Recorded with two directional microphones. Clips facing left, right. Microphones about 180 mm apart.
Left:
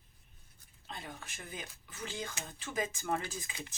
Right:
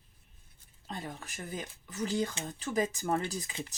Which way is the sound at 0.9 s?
40° right (ahead or behind).